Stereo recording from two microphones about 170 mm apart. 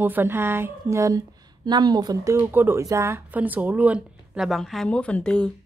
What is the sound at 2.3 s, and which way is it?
Speech, 10° right (ahead or behind).